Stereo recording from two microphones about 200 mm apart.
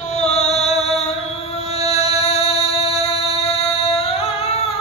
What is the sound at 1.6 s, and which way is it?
Music, 30° left (ahead or behind).